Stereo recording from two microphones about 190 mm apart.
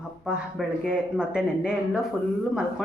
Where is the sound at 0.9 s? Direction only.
5° right (ahead or behind).